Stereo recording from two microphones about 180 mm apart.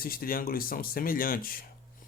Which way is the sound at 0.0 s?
55° left (ahead or behind).